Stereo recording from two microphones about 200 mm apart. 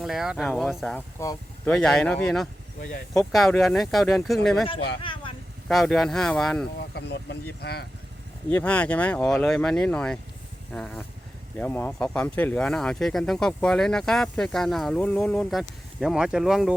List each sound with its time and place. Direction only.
0.0 s speech: centre (ahead or behind)
1.2 s speech: 15° left (ahead or behind)
1.7 s speech: 5° left (ahead or behind)
5.0 s vehicle: 25° left (ahead or behind)
5.6 s speech: centre (ahead or behind)
6.9 s speech: 60° left (ahead or behind)
8.4 s speech: 10° left (ahead or behind)